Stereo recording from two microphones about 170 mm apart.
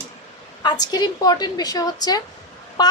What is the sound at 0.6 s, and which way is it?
A woman's voice, 25° left (ahead or behind).